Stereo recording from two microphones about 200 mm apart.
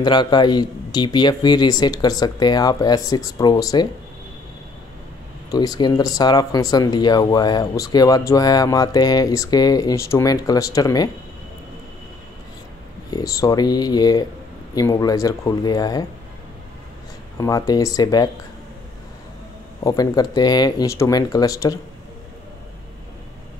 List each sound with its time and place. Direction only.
0.0 s speech: 20° left (ahead or behind)
5.5 s speech: 20° left (ahead or behind)
13.1 s speech: 15° left (ahead or behind)
17.4 s speech: 20° left (ahead or behind)
19.8 s speech: 20° left (ahead or behind)